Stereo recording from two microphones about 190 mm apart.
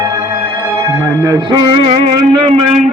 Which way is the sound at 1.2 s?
20° right (ahead or behind).